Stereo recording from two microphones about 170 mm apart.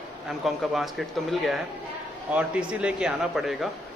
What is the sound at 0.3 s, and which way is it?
Speech, centre (ahead or behind).